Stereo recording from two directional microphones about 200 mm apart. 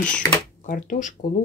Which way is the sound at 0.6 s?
40° left (ahead or behind).